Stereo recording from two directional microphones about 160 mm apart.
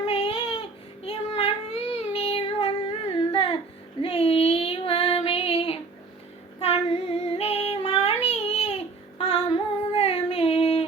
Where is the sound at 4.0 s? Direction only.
35° left (ahead or behind).